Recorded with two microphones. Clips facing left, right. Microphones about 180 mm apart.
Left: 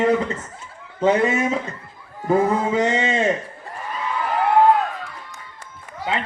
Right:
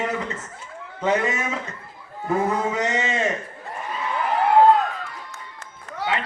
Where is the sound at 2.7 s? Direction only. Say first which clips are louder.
Left 4 dB; 30° left (ahead or behind).